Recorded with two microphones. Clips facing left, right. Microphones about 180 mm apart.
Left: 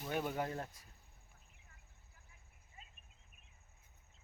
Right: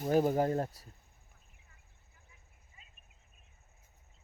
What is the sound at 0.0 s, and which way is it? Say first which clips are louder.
Speech: right 11 dB; 40° right (ahead or behind).